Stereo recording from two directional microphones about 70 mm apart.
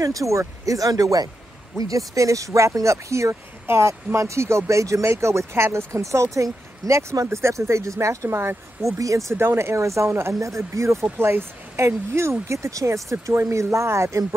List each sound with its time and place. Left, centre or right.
0.0 s speech: right